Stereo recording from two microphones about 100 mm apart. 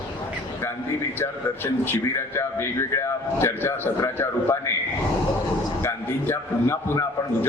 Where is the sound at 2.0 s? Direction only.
30° left (ahead or behind).